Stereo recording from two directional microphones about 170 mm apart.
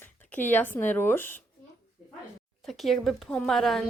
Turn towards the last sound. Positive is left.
turn(degrees=0)  # may be behind; listen again after turning